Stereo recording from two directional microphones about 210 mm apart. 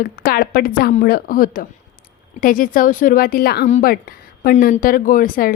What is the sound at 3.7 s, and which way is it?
A woman's voice, 35° left (ahead or behind).